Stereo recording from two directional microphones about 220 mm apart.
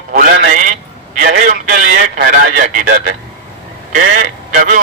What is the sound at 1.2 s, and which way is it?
Telephone, 35° right (ahead or behind).